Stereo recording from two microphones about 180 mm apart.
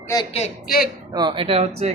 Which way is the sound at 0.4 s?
35° left (ahead or behind).